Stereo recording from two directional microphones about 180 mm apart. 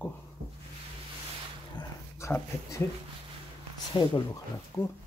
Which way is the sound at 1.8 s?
15° left (ahead or behind).